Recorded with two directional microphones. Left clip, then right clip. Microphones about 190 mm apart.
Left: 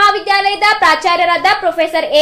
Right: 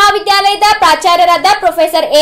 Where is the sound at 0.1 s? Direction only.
25° right (ahead or behind).